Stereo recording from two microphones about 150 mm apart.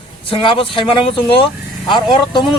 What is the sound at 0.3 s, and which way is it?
Speech, 35° left (ahead or behind).